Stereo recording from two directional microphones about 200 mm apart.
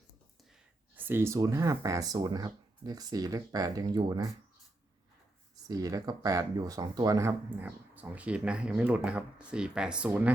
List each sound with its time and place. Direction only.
0.9 s speech: 10° right (ahead or behind)
5.6 s speech: 20° right (ahead or behind)